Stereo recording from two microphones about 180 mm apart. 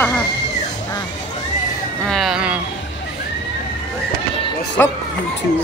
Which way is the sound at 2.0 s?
Centre (ahead or behind).